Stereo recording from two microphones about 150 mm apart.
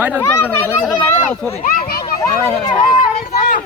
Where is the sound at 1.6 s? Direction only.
75° left (ahead or behind).